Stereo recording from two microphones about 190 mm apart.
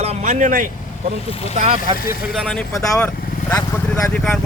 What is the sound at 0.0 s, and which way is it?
Vehicle, 35° right (ahead or behind).